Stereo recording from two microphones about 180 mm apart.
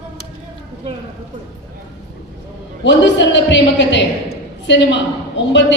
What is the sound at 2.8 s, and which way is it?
A woman's voice, 80° left.